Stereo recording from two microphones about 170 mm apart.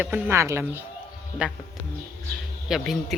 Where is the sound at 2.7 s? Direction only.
5° right (ahead or behind).